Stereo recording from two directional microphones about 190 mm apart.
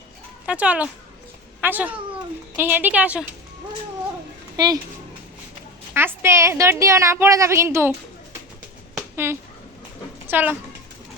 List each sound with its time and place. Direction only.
0.4 s a woman's voice: 5° right (ahead or behind)
4.5 s speech: 20° right (ahead or behind)
5.9 s a woman's voice: 10° right (ahead or behind)
9.0 s a sound: 15° right (ahead or behind)
10.2 s a woman's voice: 10° right (ahead or behind)